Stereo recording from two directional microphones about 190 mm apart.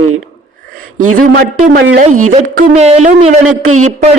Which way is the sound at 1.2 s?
45° right (ahead or behind).